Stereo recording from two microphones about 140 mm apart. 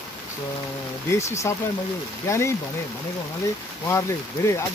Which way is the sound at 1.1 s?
20° left (ahead or behind).